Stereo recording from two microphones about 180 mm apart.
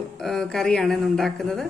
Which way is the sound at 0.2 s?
Centre (ahead or behind).